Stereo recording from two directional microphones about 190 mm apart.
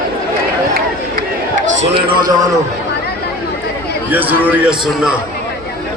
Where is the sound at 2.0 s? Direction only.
25° right (ahead or behind).